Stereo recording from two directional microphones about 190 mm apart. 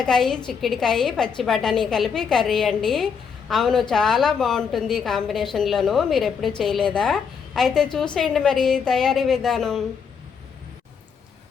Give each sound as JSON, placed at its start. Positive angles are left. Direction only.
{"t": 0.0, "sound": "a woman's voice", "side_deg": 5}